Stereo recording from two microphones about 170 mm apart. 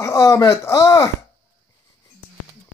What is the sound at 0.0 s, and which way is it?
Speech, 20° left (ahead or behind).